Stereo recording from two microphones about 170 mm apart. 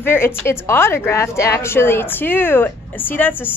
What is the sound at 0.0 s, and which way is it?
A woman's voice, 15° left (ahead or behind).